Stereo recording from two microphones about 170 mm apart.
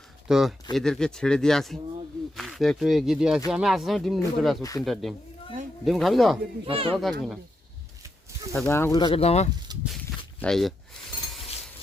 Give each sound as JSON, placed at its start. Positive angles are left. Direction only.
{"t": 0.3, "sound": "speech", "side_deg": -5}
{"t": 6.7, "sound": "speech", "side_deg": -35}
{"t": 6.9, "sound": "speech", "side_deg": 0}
{"t": 8.7, "sound": "speech", "side_deg": 15}
{"t": 9.0, "sound": "speech", "side_deg": 30}
{"t": 9.7, "sound": "speech", "side_deg": -25}
{"t": 10.4, "sound": "speech", "side_deg": 0}